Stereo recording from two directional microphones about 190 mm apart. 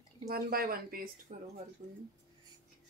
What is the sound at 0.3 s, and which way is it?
Speech, 55° right (ahead or behind).